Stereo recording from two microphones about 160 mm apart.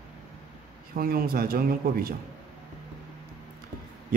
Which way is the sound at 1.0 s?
70° right (ahead or behind).